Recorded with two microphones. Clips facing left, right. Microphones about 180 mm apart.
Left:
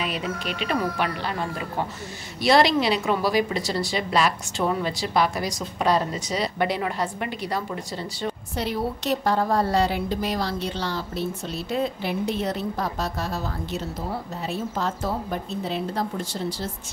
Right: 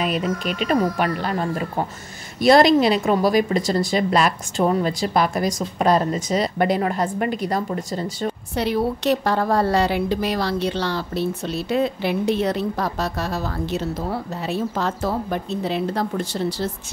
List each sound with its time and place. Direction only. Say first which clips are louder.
0.0 s speech: right 6 dB; 45° right (ahead or behind)
8.5 s a woman's voice: right 6 dB; 70° right (ahead or behind)